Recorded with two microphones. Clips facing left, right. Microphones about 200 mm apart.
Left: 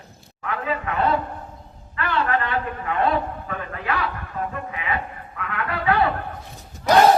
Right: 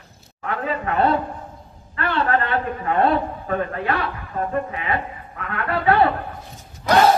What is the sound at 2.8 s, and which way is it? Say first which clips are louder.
A man's voice: right 4 dB; 40° right (ahead or behind).